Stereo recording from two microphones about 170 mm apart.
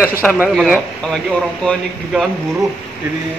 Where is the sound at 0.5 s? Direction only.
Centre (ahead or behind).